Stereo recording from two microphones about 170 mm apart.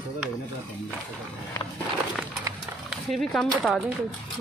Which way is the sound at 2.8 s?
Centre (ahead or behind).